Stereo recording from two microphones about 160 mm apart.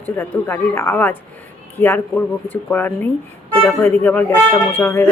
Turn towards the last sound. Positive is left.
turn(degrees=15)  # may be behind; listen again after turning